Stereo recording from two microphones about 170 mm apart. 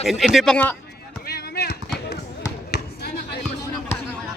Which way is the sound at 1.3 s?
65° left (ahead or behind).